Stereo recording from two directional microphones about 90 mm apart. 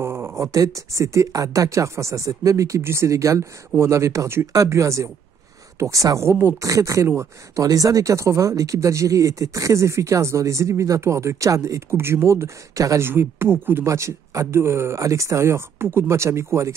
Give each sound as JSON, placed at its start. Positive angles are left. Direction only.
{"t": 0.0, "sound": "speech", "side_deg": -25}